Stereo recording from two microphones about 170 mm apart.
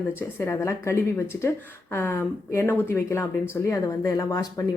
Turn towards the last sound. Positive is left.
turn(degrees=20)  # may be behind; listen again after turning